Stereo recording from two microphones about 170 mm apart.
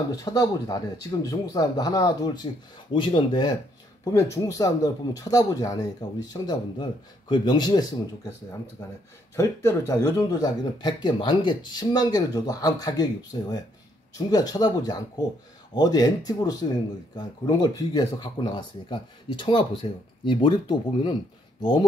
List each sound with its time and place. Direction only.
0.1 s a man's voice: 25° left (ahead or behind)